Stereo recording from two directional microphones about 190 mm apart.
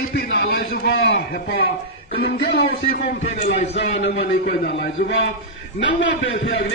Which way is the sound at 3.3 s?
35° left (ahead or behind).